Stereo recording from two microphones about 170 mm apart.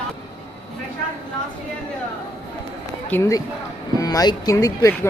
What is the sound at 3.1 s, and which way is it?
Speech, 15° left (ahead or behind).